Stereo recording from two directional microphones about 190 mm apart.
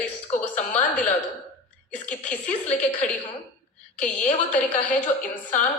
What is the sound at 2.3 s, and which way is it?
Speech, 5° left (ahead or behind).